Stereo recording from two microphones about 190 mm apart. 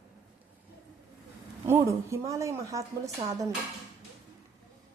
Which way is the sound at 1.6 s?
15° right (ahead or behind).